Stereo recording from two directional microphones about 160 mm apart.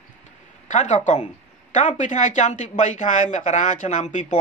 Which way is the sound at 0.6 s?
50° left (ahead or behind).